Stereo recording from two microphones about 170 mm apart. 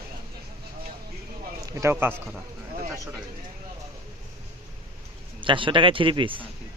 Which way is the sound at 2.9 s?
15° right (ahead or behind).